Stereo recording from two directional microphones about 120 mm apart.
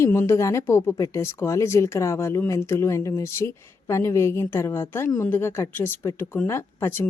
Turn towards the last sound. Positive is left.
turn(degrees=20)  # may be behind; listen again after turning